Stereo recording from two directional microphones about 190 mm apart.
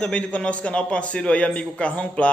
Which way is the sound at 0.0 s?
5° left (ahead or behind).